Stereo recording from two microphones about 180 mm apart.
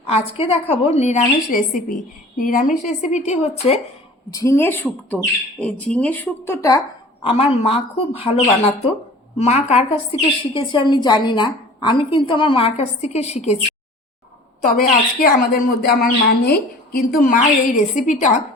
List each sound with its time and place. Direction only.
0.0 s a woman's voice: 35° left (ahead or behind)
4.3 s speech: 20° left (ahead or behind)
7.3 s a woman's voice: 30° left (ahead or behind)
9.4 s a woman's voice: 35° left (ahead or behind)
14.6 s speech: 50° left (ahead or behind)